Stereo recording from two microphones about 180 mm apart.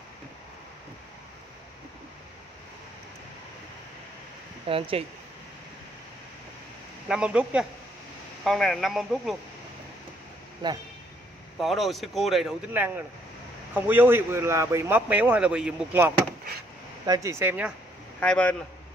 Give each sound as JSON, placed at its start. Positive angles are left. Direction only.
{"t": 4.6, "sound": "speech", "side_deg": -30}
{"t": 7.1, "sound": "speech", "side_deg": -5}
{"t": 10.6, "sound": "a man's voice", "side_deg": -25}
{"t": 11.6, "sound": "a man's voice", "side_deg": 0}
{"t": 17.0, "sound": "a man's voice", "side_deg": -20}
{"t": 18.2, "sound": "speech", "side_deg": 5}